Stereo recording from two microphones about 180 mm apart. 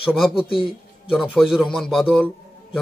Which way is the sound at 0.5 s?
30° left (ahead or behind).